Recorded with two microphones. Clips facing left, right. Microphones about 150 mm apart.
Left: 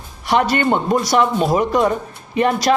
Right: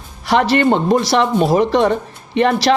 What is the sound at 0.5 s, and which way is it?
Speech, 30° right (ahead or behind).